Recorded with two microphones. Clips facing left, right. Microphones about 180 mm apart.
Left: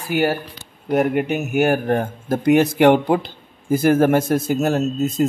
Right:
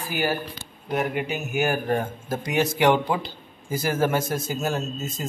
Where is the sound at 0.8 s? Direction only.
55° left (ahead or behind).